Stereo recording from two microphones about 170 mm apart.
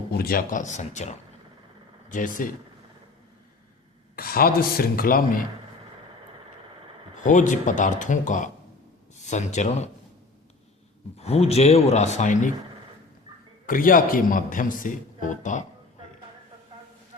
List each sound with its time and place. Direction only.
0.1 s a man's voice: 65° left (ahead or behind)
4.1 s speech: 60° left (ahead or behind)
7.2 s a man's voice: 50° left (ahead or behind)
11.2 s speech: 35° left (ahead or behind)
13.7 s a man's voice: 55° left (ahead or behind)